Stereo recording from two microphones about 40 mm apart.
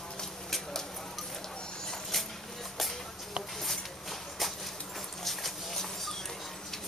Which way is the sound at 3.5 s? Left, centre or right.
Centre.